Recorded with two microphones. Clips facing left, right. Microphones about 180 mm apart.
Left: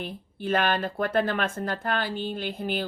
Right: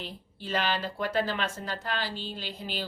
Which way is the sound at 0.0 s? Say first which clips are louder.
Left 7 dB; 55° left (ahead or behind).